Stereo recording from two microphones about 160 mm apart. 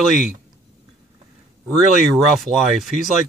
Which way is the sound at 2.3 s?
Centre (ahead or behind).